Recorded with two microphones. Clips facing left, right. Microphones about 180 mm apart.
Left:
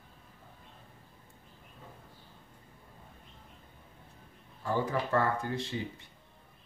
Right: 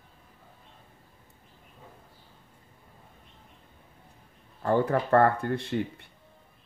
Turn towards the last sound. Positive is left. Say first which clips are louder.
# right 6 dB
turn(degrees=-60)  # may be behind; listen again after turning